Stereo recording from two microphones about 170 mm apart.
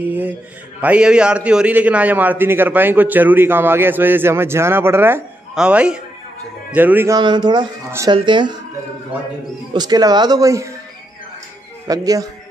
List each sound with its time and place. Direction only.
0.0 s a man's voice: 10° right (ahead or behind)
7.2 s speech: 25° right (ahead or behind)
9.7 s speech: 25° right (ahead or behind)
11.9 s speech: 20° right (ahead or behind)